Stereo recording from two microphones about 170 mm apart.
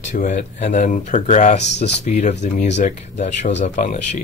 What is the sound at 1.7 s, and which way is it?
Speech, 90° left.